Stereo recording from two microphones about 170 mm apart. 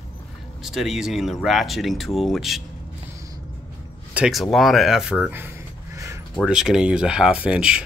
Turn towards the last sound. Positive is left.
turn(degrees=-5)  # may be behind; listen again after turning